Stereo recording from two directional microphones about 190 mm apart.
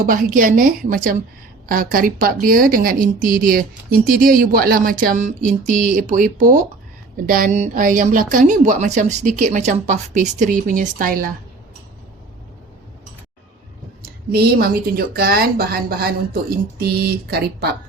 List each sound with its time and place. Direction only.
0.0 s a woman's voice: 45° right (ahead or behind)
14.3 s speech: 55° right (ahead or behind)